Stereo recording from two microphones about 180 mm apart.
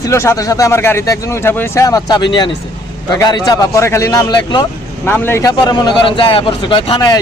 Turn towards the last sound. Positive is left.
turn(degrees=20)  # may be behind; listen again after turning